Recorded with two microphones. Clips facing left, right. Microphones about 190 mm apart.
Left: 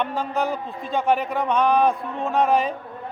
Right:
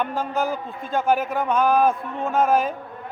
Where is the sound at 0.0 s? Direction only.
Centre (ahead or behind).